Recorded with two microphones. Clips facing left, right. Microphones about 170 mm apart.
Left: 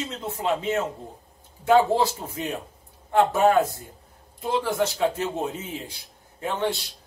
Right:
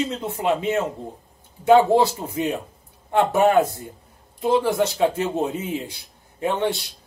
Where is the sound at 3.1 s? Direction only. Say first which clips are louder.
Right 2 dB; 15° right (ahead or behind).